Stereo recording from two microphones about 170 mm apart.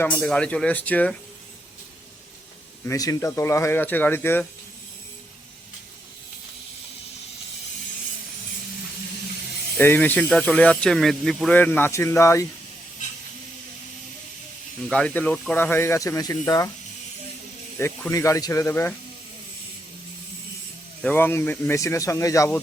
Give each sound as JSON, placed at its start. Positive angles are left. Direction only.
{"t": 0.0, "sound": "speech", "side_deg": 5}
{"t": 2.8, "sound": "speech", "side_deg": 20}
{"t": 9.7, "sound": "speech", "side_deg": 10}
{"t": 14.8, "sound": "speech", "side_deg": 5}
{"t": 17.7, "sound": "speech", "side_deg": 15}
{"t": 21.0, "sound": "speech", "side_deg": 10}